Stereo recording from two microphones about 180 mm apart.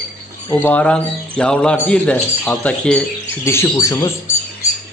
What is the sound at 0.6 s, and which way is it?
Speech, 5° left (ahead or behind).